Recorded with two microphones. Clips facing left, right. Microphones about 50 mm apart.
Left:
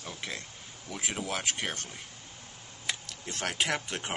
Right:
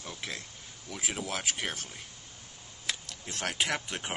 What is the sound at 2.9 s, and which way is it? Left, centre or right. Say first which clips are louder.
Speech: left 1 dB; centre.